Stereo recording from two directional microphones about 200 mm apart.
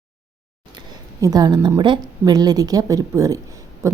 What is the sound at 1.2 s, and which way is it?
A woman's voice, 20° right (ahead or behind).